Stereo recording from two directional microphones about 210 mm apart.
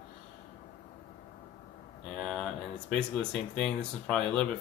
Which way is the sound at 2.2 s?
5° left (ahead or behind).